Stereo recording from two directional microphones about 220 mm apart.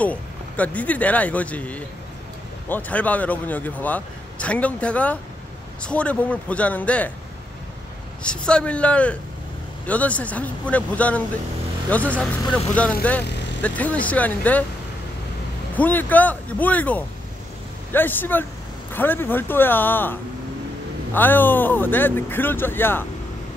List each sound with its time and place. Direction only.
0.0 s a man's voice: 5° left (ahead or behind)
8.2 s a man's voice: 5° left (ahead or behind)
15.7 s a man's voice: 10° left (ahead or behind)